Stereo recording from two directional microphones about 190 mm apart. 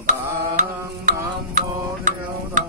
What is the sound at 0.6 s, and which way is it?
Music, 45° right (ahead or behind).